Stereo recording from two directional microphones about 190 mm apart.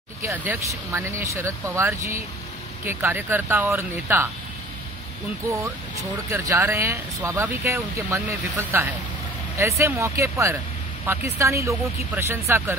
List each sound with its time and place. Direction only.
0.2 s speech: 10° right (ahead or behind)
6.3 s speech: 15° right (ahead or behind)